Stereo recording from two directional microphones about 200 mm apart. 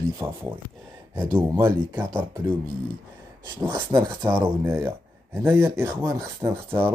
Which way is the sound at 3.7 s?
20° right (ahead or behind).